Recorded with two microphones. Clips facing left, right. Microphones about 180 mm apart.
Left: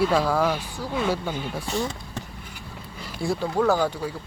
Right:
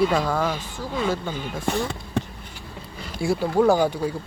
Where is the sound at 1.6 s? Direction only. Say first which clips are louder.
Right 6 dB; 60° right (ahead or behind).